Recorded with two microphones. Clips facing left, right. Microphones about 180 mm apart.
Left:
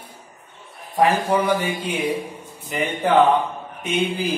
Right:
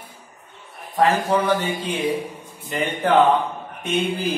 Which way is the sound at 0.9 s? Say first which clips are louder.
Even; 10° left (ahead or behind).